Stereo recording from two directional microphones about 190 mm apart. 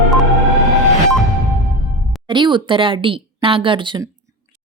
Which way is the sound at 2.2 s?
25° right (ahead or behind).